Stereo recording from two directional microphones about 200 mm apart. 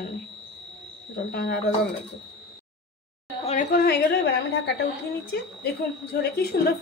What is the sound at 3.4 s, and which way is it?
A woman's voice, 45° left (ahead or behind).